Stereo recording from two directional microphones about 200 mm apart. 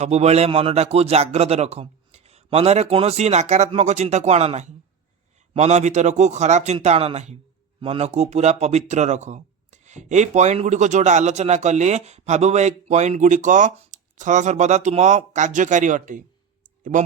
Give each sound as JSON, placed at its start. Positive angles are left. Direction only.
{"t": 0.0, "sound": "speech", "side_deg": -35}